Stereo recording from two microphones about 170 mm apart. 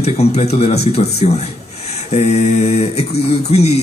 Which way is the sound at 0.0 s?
40° left (ahead or behind).